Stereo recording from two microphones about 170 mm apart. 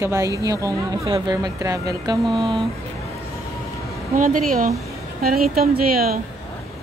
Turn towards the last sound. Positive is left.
turn(degrees=-60)  # may be behind; listen again after turning